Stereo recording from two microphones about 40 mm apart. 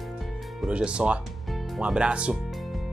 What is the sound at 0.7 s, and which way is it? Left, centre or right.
Speech, right.